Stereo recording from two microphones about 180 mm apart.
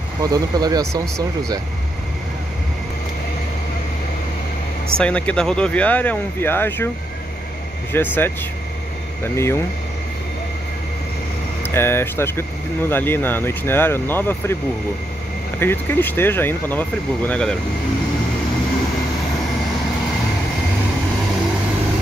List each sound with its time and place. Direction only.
0.2 s speech: 20° right (ahead or behind)
4.9 s speech: 5° left (ahead or behind)
7.9 s speech: 10° left (ahead or behind)
11.7 s speech: 15° left (ahead or behind)
15.6 s speech: 10° left (ahead or behind)